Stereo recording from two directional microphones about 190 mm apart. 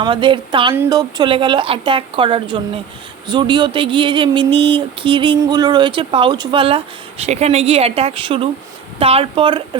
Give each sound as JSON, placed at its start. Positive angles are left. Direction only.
{"t": 0.0, "sound": "speech", "side_deg": -25}
{"t": 0.7, "sound": "speech", "side_deg": -15}